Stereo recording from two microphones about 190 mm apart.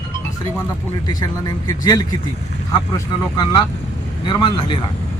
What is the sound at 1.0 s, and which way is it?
Speech, 20° left (ahead or behind).